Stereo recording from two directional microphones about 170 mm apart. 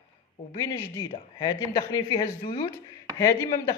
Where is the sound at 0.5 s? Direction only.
25° left (ahead or behind).